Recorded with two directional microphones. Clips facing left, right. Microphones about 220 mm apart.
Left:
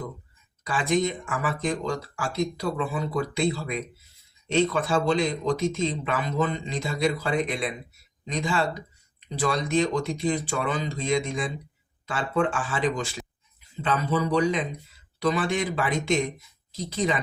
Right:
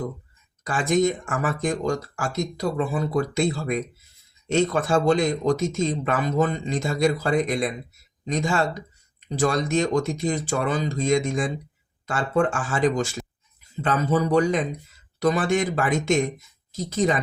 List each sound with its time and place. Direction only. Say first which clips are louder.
0.6 s speech: right 3 dB; 45° right (ahead or behind)